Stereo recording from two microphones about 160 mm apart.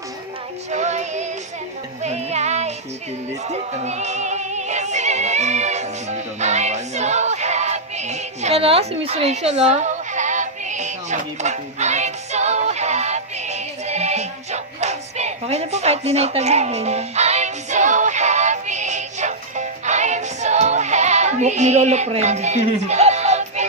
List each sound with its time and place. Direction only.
0.7 s music: 45° right (ahead or behind)